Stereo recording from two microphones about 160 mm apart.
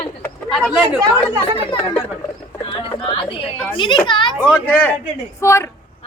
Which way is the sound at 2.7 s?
35° left (ahead or behind).